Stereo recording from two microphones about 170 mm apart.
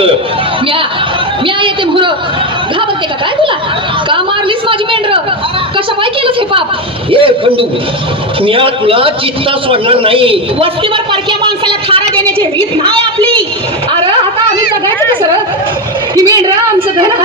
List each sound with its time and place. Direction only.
1.5 s a man's voice: 30° right (ahead or behind)
4.1 s a sound: 30° right (ahead or behind)
7.1 s a man's voice: 30° right (ahead or behind)
13.9 s a woman's voice: 30° right (ahead or behind)